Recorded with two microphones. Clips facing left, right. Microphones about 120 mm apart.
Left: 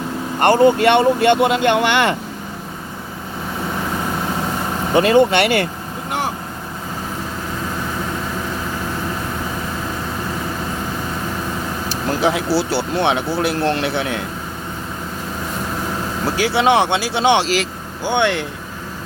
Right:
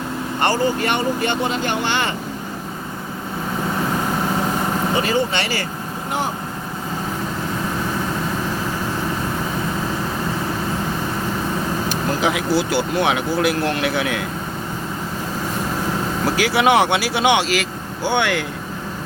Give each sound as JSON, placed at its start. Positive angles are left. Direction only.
{"t": 0.3, "sound": "speech", "side_deg": 60}
{"t": 4.9, "sound": "speech", "side_deg": 60}
{"t": 11.9, "sound": "speech", "side_deg": 35}
{"t": 16.4, "sound": "speech", "side_deg": 25}
{"t": 18.0, "sound": "speech", "side_deg": 20}